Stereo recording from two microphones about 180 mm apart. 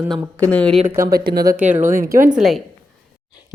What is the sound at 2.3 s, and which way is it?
Speech, centre (ahead or behind).